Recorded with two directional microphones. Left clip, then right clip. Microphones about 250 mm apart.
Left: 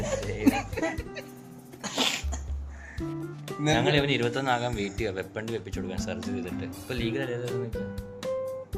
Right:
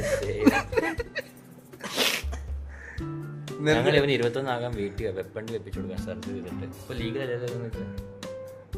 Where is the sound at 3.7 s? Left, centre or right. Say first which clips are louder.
Right 3 dB; right.